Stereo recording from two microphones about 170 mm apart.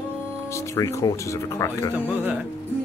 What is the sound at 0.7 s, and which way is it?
Speech, 20° left (ahead or behind).